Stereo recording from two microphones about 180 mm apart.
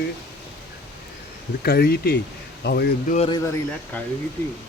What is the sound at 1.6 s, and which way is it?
Speech, 60° left (ahead or behind).